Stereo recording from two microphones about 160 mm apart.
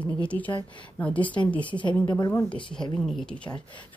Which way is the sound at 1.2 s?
30° left (ahead or behind).